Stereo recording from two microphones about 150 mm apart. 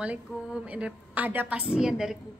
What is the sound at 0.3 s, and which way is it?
A woman's voice, 5° right (ahead or behind).